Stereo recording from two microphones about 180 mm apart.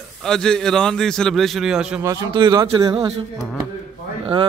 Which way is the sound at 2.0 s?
20° right (ahead or behind).